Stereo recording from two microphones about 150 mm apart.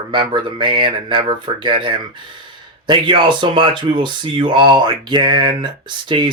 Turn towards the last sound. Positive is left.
turn(degrees=-30)  # may be behind; listen again after turning